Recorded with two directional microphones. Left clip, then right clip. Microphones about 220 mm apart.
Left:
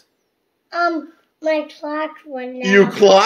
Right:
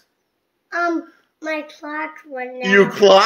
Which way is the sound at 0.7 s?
30° right (ahead or behind).